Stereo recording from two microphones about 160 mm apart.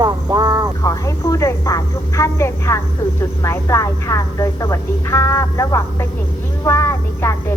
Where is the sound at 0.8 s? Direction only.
20° left (ahead or behind).